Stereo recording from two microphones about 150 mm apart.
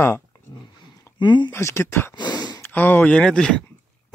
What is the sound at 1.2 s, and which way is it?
Speech, 30° left (ahead or behind).